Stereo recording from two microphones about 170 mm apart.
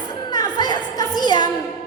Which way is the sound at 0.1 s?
25° left (ahead or behind).